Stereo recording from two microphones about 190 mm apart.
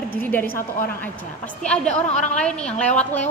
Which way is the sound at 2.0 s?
40° left (ahead or behind).